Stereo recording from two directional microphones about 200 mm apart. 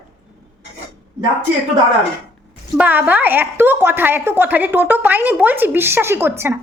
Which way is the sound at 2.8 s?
10° right (ahead or behind).